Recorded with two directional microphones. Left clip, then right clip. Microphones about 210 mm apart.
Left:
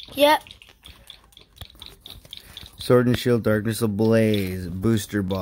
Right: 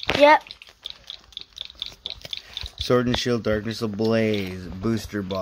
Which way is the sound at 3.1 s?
40° left (ahead or behind).